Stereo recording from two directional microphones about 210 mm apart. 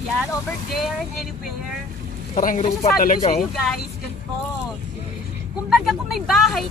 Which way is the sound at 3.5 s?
Centre (ahead or behind).